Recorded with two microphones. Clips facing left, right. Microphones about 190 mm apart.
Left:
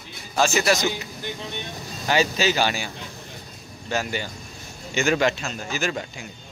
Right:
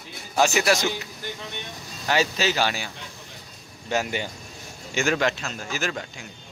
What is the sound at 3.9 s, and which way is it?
Speech, 20° right (ahead or behind).